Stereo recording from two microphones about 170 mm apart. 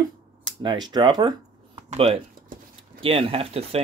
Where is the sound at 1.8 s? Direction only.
35° right (ahead or behind).